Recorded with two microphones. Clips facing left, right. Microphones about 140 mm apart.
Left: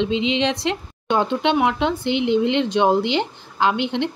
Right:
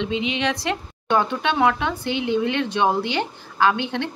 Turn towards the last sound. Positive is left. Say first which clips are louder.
# left 1 dB
turn(degrees=20)  # may be behind; listen again after turning